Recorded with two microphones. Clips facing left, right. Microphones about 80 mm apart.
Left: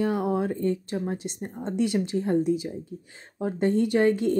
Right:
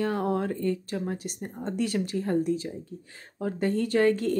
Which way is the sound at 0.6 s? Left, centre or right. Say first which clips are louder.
Left 2 dB; left.